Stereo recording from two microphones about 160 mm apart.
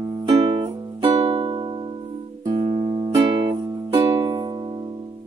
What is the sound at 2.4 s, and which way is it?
Music, 40° right (ahead or behind).